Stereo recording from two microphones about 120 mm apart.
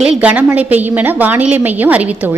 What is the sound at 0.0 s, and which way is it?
A woman's voice, 10° right (ahead or behind).